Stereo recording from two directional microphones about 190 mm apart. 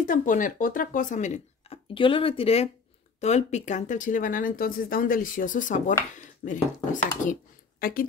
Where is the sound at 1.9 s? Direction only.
25° left (ahead or behind).